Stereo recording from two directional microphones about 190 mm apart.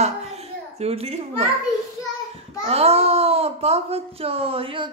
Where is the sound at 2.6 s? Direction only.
30° right (ahead or behind).